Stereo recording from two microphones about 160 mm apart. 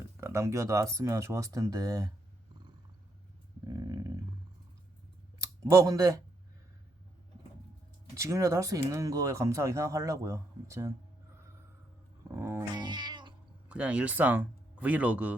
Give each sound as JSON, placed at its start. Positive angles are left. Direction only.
{"t": 0.2, "sound": "speech", "side_deg": -15}
{"t": 3.7, "sound": "a sound", "side_deg": -20}
{"t": 5.4, "sound": "speech", "side_deg": -20}
{"t": 8.1, "sound": "speech", "side_deg": -20}
{"t": 12.3, "sound": "cat", "side_deg": -15}
{"t": 13.7, "sound": "speech", "side_deg": -5}